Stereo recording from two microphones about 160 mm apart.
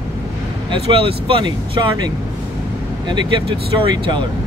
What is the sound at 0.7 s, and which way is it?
Speech, 35° right (ahead or behind).